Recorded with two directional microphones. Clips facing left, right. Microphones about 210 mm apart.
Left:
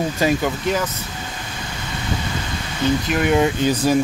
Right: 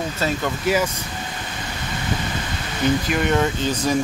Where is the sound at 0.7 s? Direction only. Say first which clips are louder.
Right 2 dB; 5° right (ahead or behind).